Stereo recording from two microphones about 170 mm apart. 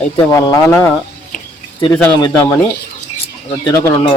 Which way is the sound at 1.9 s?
15° left (ahead or behind).